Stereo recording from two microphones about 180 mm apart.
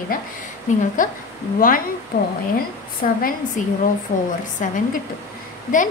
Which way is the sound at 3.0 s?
45° left (ahead or behind).